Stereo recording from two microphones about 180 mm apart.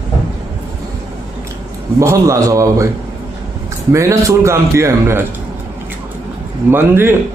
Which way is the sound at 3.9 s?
15° right (ahead or behind).